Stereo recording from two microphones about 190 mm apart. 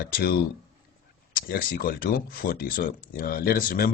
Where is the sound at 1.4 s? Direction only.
50° left (ahead or behind).